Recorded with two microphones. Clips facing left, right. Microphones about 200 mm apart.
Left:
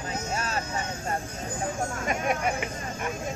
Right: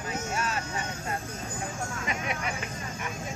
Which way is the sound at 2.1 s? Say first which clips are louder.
Left 7 dB; 45° left (ahead or behind).